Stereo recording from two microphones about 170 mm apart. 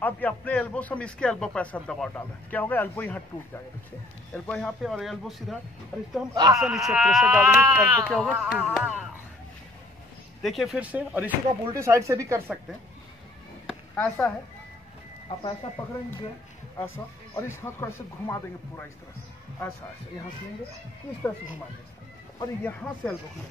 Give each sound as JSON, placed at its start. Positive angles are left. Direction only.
{"t": 0.0, "sound": "a man's voice", "side_deg": 10}
{"t": 4.3, "sound": "speech", "side_deg": 5}
{"t": 6.3, "sound": "a man's voice", "side_deg": -20}
{"t": 6.6, "sound": "speech", "side_deg": 0}
{"t": 8.1, "sound": "speech", "side_deg": 0}
{"t": 10.4, "sound": "speech", "side_deg": 0}
{"t": 13.9, "sound": "a man's voice", "side_deg": 10}
{"t": 16.7, "sound": "a man's voice", "side_deg": 15}
{"t": 22.6, "sound": "a man's voice", "side_deg": 10}